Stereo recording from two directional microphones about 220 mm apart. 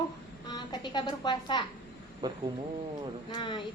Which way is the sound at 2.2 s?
20° right (ahead or behind).